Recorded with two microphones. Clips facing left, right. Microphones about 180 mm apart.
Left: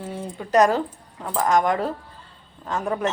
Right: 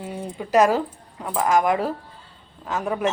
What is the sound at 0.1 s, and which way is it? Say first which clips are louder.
A woman's voice: even; 5° right (ahead or behind).